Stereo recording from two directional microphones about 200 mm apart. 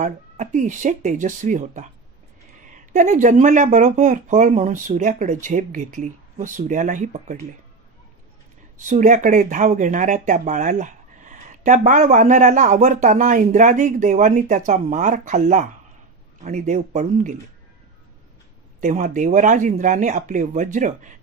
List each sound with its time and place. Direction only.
0.0 s speech: 40° right (ahead or behind)
8.7 s speech: 40° right (ahead or behind)
18.8 s speech: 40° right (ahead or behind)